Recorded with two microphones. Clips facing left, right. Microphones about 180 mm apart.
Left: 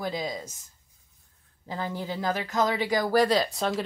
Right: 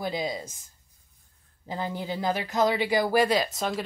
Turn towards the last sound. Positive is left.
turn(degrees=-5)  # may be behind; listen again after turning